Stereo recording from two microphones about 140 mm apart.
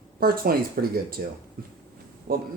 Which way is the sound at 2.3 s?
90° right.